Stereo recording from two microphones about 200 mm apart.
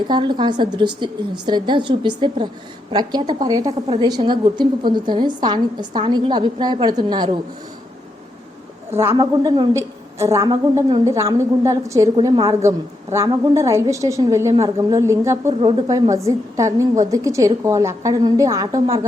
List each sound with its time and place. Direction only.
0.1 s a woman's voice: 20° right (ahead or behind)
8.9 s a woman's voice: 15° right (ahead or behind)